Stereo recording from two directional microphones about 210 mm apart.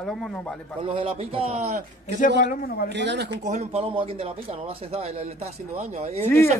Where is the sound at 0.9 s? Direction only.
25° right (ahead or behind).